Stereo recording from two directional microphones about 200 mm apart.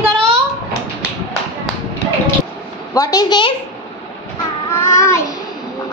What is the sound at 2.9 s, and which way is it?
Speech, 20° left (ahead or behind).